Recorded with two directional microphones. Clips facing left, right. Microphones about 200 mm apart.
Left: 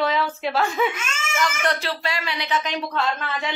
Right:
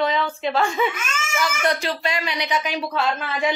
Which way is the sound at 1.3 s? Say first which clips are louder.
Right 1 dB; 10° right (ahead or behind).